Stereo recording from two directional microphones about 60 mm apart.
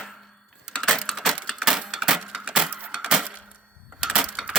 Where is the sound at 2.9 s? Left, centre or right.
Centre.